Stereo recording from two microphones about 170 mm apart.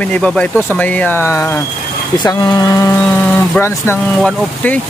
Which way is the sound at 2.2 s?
25° left (ahead or behind).